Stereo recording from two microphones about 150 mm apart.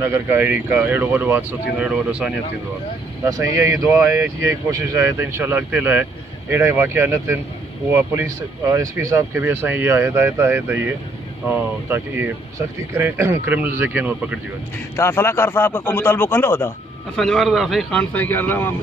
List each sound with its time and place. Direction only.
0.0 s speech: 15° right (ahead or behind)
3.3 s speech: 20° right (ahead or behind)
15.0 s a man's voice: 15° left (ahead or behind)
17.2 s speech: centre (ahead or behind)
18.1 s a man's voice: 10° left (ahead or behind)